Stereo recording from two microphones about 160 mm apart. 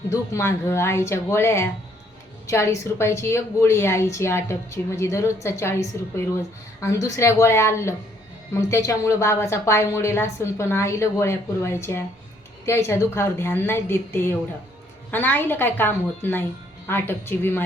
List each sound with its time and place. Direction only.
0.1 s a woman's voice: 15° left (ahead or behind)